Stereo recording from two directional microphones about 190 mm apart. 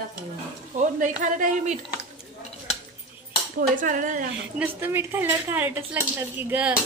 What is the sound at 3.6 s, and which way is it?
Speech, 45° right (ahead or behind).